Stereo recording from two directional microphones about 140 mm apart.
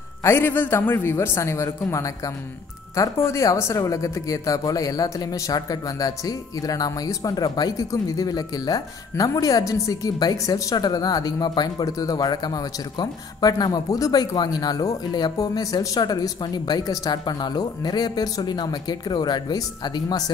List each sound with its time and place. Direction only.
0.2 s speech: 15° left (ahead or behind)